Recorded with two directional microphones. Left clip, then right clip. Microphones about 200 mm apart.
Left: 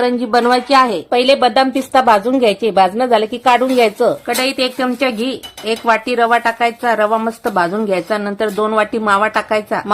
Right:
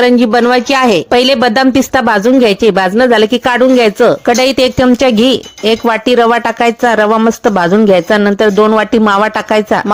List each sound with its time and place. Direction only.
0.0 s speech: 40° right (ahead or behind)